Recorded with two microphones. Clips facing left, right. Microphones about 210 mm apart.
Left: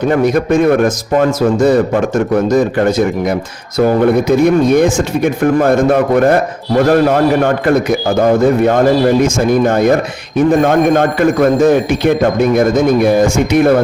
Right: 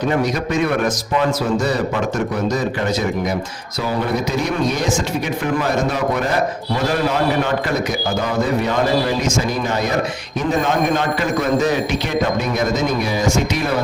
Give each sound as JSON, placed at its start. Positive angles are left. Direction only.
{"t": 0.2, "sound": "a man's voice", "side_deg": 55}